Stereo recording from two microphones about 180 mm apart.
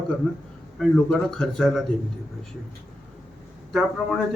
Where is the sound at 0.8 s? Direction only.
5° left (ahead or behind).